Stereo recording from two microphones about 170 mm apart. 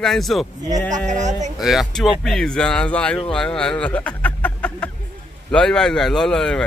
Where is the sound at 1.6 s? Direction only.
Centre (ahead or behind).